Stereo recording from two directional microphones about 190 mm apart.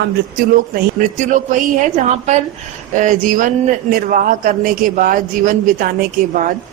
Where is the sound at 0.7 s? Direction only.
40° right (ahead or behind).